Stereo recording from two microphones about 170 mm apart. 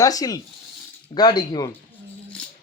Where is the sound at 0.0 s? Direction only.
20° left (ahead or behind).